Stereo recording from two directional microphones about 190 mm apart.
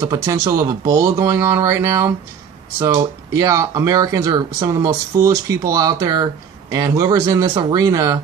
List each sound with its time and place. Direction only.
0.0 s speech: 15° right (ahead or behind)